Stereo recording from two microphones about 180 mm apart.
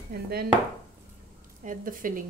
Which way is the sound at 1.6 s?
50° right (ahead or behind).